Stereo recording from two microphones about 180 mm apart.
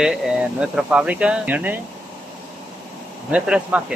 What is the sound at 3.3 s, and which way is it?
Speech, 5° right (ahead or behind).